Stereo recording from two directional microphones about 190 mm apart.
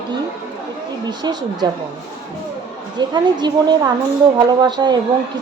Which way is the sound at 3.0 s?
25° right (ahead or behind).